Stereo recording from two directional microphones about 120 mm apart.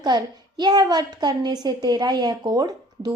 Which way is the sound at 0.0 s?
40° right (ahead or behind).